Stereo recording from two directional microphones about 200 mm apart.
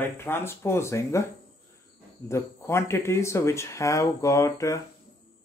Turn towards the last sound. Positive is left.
turn(degrees=15)  # may be behind; listen again after turning